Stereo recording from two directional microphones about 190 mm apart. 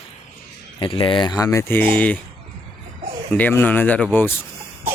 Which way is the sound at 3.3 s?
10° left (ahead or behind).